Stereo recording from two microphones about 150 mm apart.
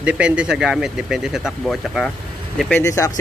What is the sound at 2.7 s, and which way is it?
Speech, 20° left (ahead or behind).